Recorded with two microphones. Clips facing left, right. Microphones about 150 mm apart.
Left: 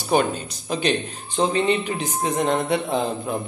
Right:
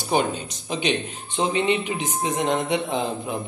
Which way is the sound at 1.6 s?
20° right (ahead or behind).